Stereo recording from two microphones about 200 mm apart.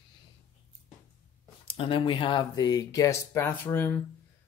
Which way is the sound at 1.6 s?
25° left (ahead or behind).